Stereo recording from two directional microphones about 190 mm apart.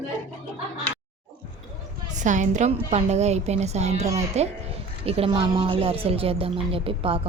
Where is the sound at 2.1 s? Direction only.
40° right (ahead or behind).